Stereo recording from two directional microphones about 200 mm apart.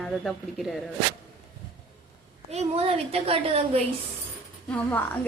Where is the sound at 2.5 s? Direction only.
30° right (ahead or behind).